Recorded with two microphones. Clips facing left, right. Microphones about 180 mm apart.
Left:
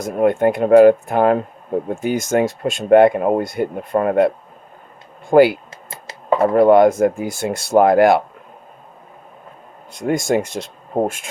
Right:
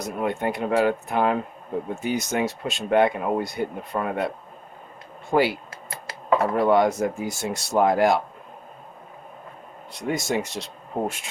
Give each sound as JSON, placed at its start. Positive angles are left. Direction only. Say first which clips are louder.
{"t": 0.0, "sound": "speech", "louder": "left 10 dB", "side_deg": 50}
{"t": 5.3, "sound": "speech", "louder": "left 10 dB", "side_deg": 55}
{"t": 5.7, "sound": "computer keyboard", "louder": "left 1 dB", "side_deg": 25}
{"t": 6.4, "sound": "speech", "louder": "left 10 dB", "side_deg": 55}
{"t": 10.0, "sound": "speech", "louder": "left 7 dB", "side_deg": 50}